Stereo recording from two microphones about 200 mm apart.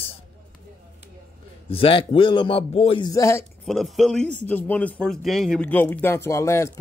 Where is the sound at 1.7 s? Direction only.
25° left (ahead or behind).